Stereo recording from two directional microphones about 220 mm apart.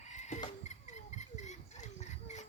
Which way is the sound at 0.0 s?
30° left (ahead or behind).